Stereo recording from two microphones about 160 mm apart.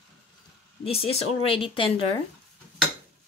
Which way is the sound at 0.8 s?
35° left (ahead or behind).